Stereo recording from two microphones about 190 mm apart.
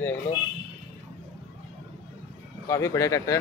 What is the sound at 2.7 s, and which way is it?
Speech, 15° left (ahead or behind).